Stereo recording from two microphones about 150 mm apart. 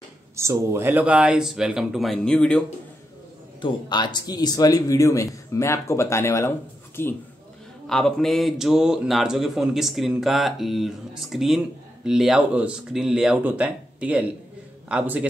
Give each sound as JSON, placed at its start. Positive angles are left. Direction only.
{"t": 0.4, "sound": "speech", "side_deg": -20}
{"t": 3.6, "sound": "speech", "side_deg": 30}
{"t": 7.8, "sound": "a man's voice", "side_deg": 5}